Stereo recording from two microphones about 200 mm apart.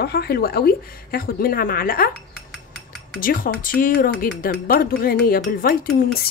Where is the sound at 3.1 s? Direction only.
45° left (ahead or behind).